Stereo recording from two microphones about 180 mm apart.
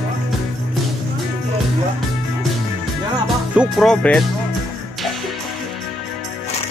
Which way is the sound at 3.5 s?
Centre (ahead or behind).